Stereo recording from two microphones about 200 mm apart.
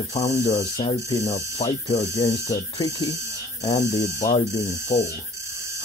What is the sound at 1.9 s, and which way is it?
Speech, 15° left (ahead or behind).